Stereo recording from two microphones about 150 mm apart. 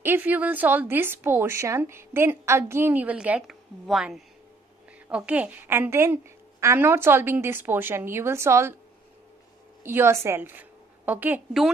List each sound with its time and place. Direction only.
0.0 s a woman's voice: 15° right (ahead or behind)
9.8 s a woman's voice: 15° right (ahead or behind)